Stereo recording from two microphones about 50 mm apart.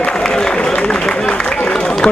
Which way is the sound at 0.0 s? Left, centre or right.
Centre.